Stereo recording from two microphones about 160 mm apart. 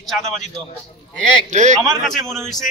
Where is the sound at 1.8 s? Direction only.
Centre (ahead or behind).